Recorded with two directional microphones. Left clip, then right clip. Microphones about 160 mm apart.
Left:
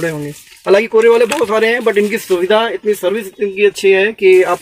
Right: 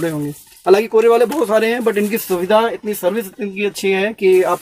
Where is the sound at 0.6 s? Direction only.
10° right (ahead or behind).